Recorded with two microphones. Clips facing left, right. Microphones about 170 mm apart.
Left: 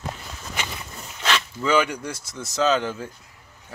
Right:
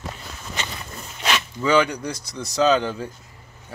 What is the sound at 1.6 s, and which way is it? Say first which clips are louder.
Speech: right 3 dB; 5° left (ahead or behind).